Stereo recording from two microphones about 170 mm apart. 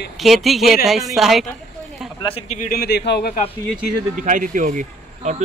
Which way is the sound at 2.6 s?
65° left (ahead or behind).